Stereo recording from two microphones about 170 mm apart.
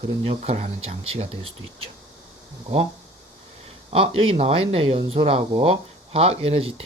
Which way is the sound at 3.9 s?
35° right (ahead or behind).